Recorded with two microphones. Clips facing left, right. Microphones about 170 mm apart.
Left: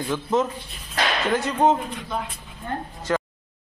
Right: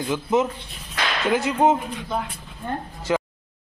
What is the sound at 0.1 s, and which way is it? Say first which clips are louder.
Speech: right 1 dB; 10° right (ahead or behind).